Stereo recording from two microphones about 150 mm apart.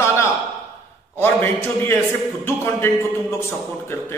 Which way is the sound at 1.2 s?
15° left (ahead or behind).